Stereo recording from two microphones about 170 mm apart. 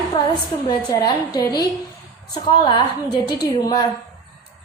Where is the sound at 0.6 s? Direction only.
20° left (ahead or behind).